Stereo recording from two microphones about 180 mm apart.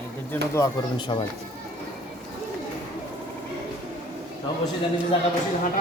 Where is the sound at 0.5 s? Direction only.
20° left (ahead or behind).